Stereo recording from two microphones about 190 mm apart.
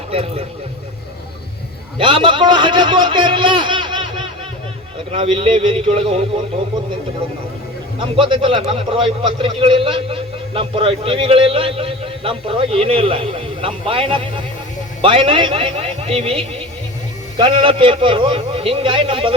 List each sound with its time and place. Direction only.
0.1 s speech: 30° right (ahead or behind)
2.0 s a man's voice: 25° right (ahead or behind)
7.9 s a man's voice: 25° right (ahead or behind)